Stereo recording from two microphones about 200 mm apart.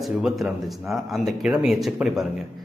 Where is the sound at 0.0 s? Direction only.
Centre (ahead or behind).